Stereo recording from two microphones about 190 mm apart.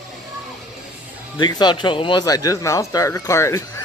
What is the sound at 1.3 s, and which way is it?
Speech, 25° left (ahead or behind).